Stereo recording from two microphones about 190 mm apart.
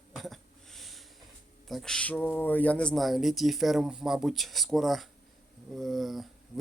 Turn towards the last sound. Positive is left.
turn(degrees=0)  # may be behind; listen again after turning